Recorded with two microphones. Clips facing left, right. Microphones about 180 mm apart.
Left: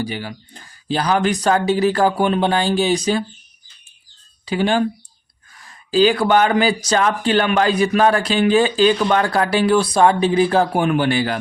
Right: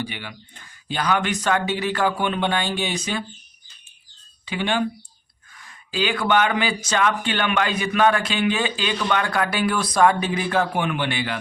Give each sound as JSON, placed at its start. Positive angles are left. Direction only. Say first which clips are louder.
{"t": 0.0, "sound": "speech", "louder": "left 6 dB", "side_deg": 40}
{"t": 4.4, "sound": "speech", "louder": "left 6 dB", "side_deg": 40}